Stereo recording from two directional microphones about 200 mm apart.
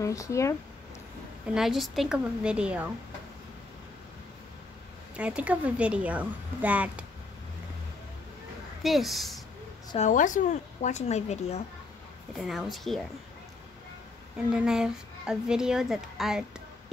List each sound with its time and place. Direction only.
0.0 s speech: 15° left (ahead or behind)
1.5 s speech: centre (ahead or behind)
5.1 s a woman's voice: 5° right (ahead or behind)
8.8 s speech: centre (ahead or behind)
9.9 s speech: 40° left (ahead or behind)
12.4 s speech: centre (ahead or behind)
14.5 s speech: 5° right (ahead or behind)